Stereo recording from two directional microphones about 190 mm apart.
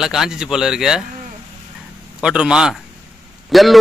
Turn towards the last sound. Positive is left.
turn(degrees=0)  # may be behind; listen again after turning